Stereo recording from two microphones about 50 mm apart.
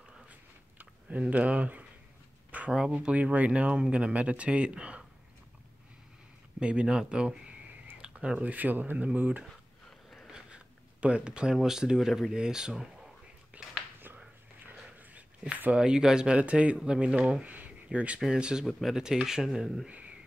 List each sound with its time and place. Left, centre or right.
0.3 s a sound: right
2.9 s speech: right
6.6 s speech: right
9.4 s a sound: centre
10.3 s a sound: right
11.5 s speech: centre
13.5 s whispering: right
14.7 s dog: right
15.7 s speech: centre
17.5 s a sound: right
17.8 s speech: right
18.3 s speech: centre
18.7 s speech: centre
18.9 s speech: centre